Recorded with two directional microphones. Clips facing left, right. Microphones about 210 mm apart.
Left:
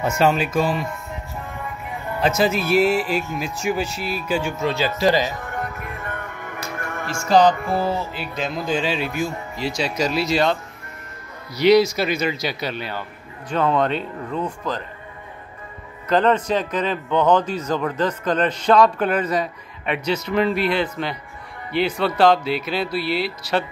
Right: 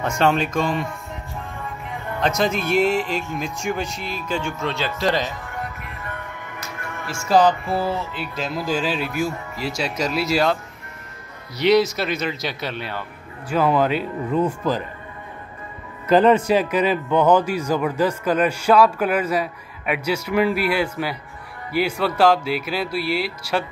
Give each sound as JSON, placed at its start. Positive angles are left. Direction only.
{"t": 0.0, "sound": "speech", "side_deg": 5}
{"t": 2.1, "sound": "speech", "side_deg": 5}
{"t": 5.5, "sound": "music", "side_deg": 50}
{"t": 7.2, "sound": "a man's voice", "side_deg": -5}
{"t": 16.1, "sound": "a man's voice", "side_deg": -10}